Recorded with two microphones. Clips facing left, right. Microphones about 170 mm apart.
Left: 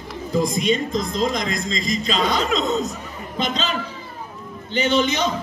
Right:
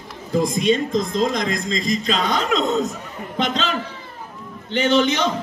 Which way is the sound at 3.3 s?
65° right (ahead or behind).